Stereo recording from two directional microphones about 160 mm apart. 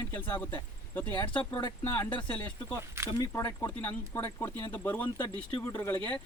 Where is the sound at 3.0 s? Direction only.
20° left (ahead or behind).